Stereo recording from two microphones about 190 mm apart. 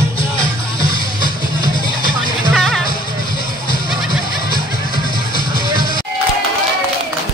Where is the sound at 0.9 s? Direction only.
25° left (ahead or behind).